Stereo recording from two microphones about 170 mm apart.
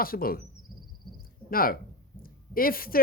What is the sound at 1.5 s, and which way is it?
Speech, 60° left (ahead or behind).